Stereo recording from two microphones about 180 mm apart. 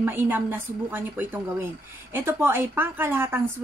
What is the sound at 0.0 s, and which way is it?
A woman's voice, 10° right (ahead or behind).